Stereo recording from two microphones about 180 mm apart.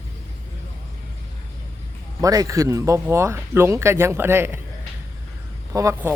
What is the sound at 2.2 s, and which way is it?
Speech, 20° right (ahead or behind).